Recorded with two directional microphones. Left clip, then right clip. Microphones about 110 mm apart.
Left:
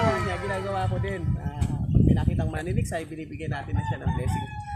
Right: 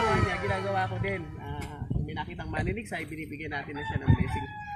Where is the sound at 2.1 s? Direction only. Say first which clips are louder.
Left 5 dB; 35° left (ahead or behind).